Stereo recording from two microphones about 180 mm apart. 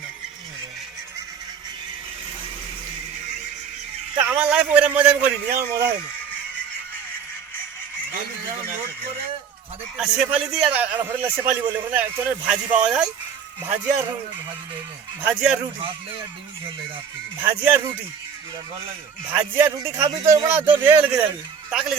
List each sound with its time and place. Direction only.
4.2 s a man's voice: 5° right (ahead or behind)
10.0 s a man's voice: 5° right (ahead or behind)
15.3 s a man's voice: 5° right (ahead or behind)
17.4 s a man's voice: 10° right (ahead or behind)
19.3 s a man's voice: 10° right (ahead or behind)